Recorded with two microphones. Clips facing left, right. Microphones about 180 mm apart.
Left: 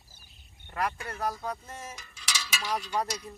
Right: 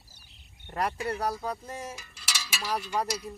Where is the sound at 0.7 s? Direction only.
35° right (ahead or behind).